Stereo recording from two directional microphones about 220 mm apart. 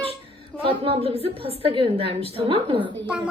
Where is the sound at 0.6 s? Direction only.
25° right (ahead or behind).